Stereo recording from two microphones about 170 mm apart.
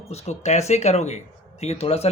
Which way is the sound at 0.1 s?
40° left (ahead or behind).